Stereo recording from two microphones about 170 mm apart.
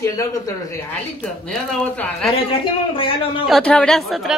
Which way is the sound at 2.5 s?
30° left (ahead or behind).